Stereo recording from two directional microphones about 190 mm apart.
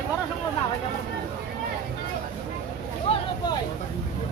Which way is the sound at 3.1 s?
30° left (ahead or behind).